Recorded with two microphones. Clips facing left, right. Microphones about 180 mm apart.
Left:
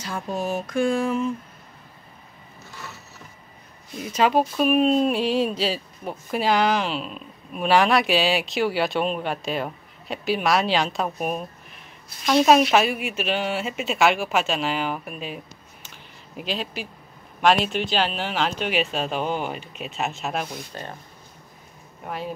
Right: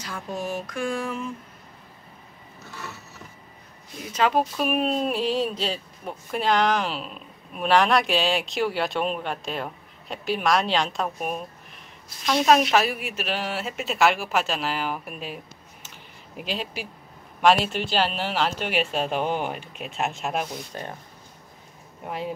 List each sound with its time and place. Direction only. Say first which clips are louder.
0.0 s a sound: left 4 dB; 25° left (ahead or behind)
4.2 s speech: left 3 dB; 5° left (ahead or behind)
16.3 s speech: left 2 dB; 10° right (ahead or behind)
22.0 s speech: even; 20° right (ahead or behind)